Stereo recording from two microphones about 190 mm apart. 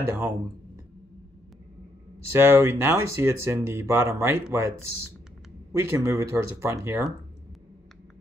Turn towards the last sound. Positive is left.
turn(degrees=-15)  # may be behind; listen again after turning